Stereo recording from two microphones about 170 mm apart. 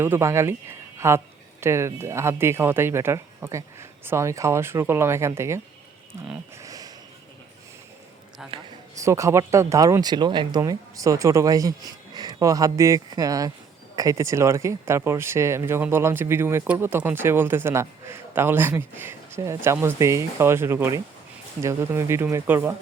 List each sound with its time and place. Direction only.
0.0 s speech: 15° right (ahead or behind)
6.6 s a sound: 20° right (ahead or behind)
8.4 s a man's voice: 5° right (ahead or behind)
9.0 s speech: 20° right (ahead or behind)